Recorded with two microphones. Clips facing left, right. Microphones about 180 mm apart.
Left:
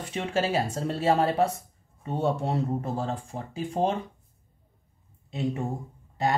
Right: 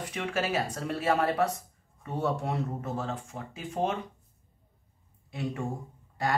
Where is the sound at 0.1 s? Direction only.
25° left (ahead or behind).